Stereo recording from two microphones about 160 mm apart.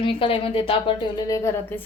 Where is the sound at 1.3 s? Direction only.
15° left (ahead or behind).